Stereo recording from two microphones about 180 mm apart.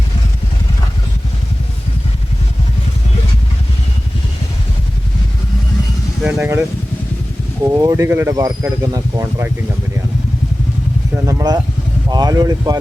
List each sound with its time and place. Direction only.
6.2 s speech: 5° right (ahead or behind)
7.7 s speech: 20° right (ahead or behind)
11.3 s speech: 20° right (ahead or behind)